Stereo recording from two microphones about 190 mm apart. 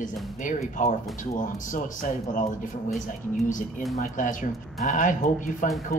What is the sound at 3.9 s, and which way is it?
Speech, 40° left (ahead or behind).